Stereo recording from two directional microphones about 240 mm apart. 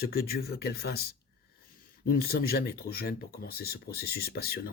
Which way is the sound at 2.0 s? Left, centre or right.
Left.